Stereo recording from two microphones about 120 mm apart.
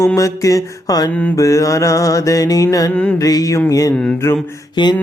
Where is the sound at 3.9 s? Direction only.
10° left (ahead or behind).